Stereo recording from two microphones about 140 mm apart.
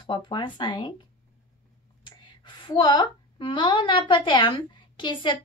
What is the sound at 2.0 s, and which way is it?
A woman's voice, 35° left (ahead or behind).